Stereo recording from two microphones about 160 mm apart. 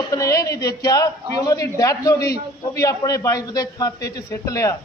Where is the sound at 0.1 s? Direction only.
20° left (ahead or behind).